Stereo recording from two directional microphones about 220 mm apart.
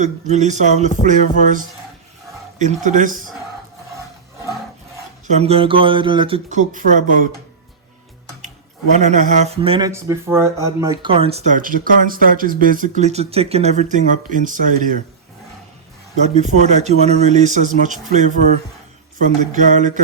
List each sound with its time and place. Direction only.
0.0 s speech: 30° right (ahead or behind)
2.8 s speech: 35° right (ahead or behind)
5.3 s speech: 25° right (ahead or behind)
8.9 s speech: 35° right (ahead or behind)
9.9 s speech: 10° right (ahead or behind); by 14.7 s 35° right (ahead or behind)
16.3 s speech: 35° right (ahead or behind)